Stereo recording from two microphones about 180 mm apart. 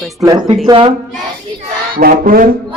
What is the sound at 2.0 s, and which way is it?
Speech, 55° right (ahead or behind).